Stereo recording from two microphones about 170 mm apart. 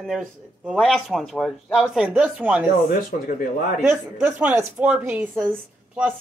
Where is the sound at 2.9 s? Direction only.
55° left (ahead or behind).